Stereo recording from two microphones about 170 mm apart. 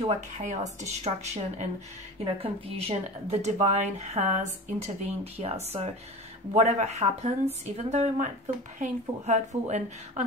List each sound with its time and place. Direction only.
0.0 s a woman's voice: 40° right (ahead or behind)